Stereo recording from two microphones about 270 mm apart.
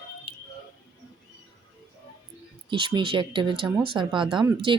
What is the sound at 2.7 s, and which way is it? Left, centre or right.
Speech, centre.